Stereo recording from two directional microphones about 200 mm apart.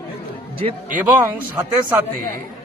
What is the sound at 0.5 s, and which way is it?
Speech, 25° right (ahead or behind).